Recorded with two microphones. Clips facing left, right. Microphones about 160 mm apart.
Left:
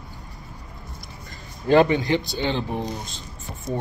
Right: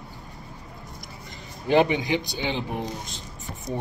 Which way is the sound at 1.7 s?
15° right (ahead or behind).